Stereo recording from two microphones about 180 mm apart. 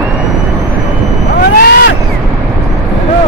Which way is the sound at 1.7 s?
70° left (ahead or behind).